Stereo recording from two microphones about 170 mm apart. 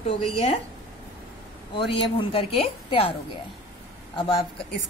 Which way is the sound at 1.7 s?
30° left (ahead or behind).